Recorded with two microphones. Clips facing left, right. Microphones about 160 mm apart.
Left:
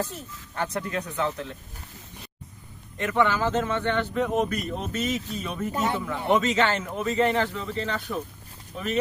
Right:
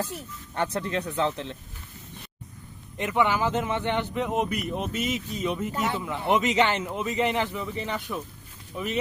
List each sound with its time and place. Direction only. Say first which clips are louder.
0.5 s speech: right 1 dB; 30° right (ahead or behind)
3.0 s speech: left 1 dB; 15° right (ahead or behind)
5.7 s speech: left 2 dB; 20° left (ahead or behind)
6.1 s speech: even; 20° right (ahead or behind)